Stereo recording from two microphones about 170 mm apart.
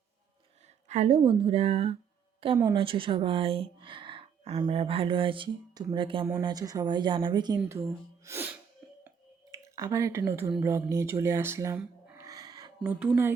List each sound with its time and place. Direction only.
0.9 s a woman's voice: 40° right (ahead or behind)
7.9 s speech: 15° right (ahead or behind)
9.0 s a sound: 20° right (ahead or behind)
10.6 s speech: 15° right (ahead or behind)
12.2 s music: 20° right (ahead or behind)
12.8 s speech: 10° right (ahead or behind)